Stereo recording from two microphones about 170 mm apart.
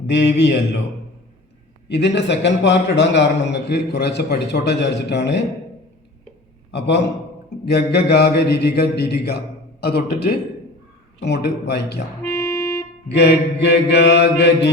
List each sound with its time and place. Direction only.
0.1 s a man's voice: 90° left
1.9 s a man's voice: 90° left
6.7 s a man's voice: 90° left
7.6 s mantra: 70° left (ahead or behind)
11.2 s mantra: 80° left
12.4 s music: 20° left (ahead or behind)
13.1 s mantra: 85° left